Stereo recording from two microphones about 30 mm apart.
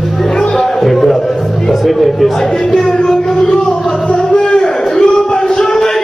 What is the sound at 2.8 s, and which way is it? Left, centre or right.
Music, left.